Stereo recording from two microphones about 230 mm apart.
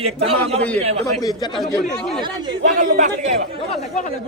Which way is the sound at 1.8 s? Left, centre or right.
Centre.